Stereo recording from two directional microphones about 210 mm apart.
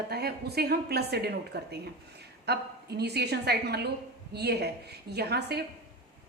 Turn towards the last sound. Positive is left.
turn(degrees=-50)  # may be behind; listen again after turning